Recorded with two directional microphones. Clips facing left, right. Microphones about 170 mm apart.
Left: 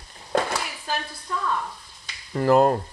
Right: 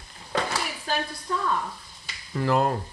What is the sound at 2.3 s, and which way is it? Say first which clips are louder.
Frying: left 6 dB; 45° left (ahead or behind).